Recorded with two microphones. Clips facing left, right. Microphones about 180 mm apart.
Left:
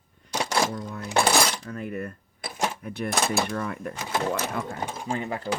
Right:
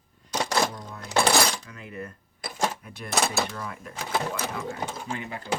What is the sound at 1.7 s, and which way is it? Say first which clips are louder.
Speech: left 6 dB; 55° left (ahead or behind).